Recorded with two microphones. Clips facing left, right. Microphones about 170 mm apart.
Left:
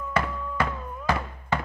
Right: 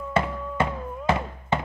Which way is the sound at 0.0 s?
25° right (ahead or behind).